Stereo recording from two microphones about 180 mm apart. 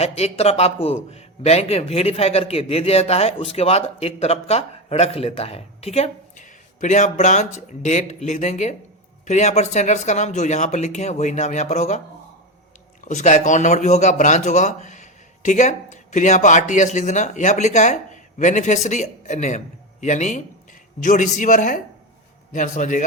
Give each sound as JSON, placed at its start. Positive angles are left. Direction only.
{"t": 0.0, "sound": "a man's voice", "side_deg": 35}
{"t": 13.1, "sound": "a man's voice", "side_deg": 40}